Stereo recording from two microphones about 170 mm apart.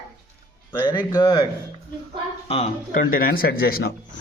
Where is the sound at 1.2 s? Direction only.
25° left (ahead or behind).